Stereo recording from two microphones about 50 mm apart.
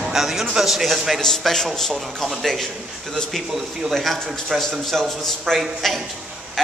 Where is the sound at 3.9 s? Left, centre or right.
Centre.